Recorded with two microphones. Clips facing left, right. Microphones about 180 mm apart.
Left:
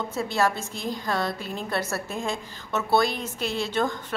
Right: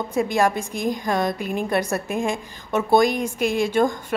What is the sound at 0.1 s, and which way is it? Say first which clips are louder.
A woman's voice: right 6 dB; 15° right (ahead or behind).